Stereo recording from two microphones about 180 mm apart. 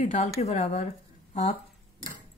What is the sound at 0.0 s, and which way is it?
Speech, 40° left (ahead or behind).